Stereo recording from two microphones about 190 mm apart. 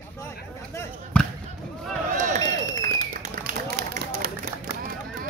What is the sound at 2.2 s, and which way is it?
Run, 40° right (ahead or behind).